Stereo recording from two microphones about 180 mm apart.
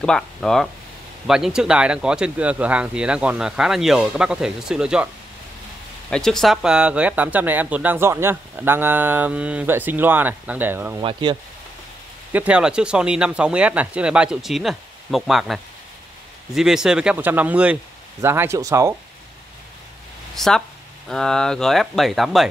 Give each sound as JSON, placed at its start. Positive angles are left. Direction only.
{"t": 0.0, "sound": "speech", "side_deg": 0}
{"t": 11.0, "sound": "speech", "side_deg": -25}
{"t": 12.3, "sound": "speech", "side_deg": -10}
{"t": 20.3, "sound": "speech", "side_deg": 0}